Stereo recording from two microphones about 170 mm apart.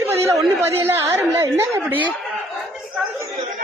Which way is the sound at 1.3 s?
15° right (ahead or behind).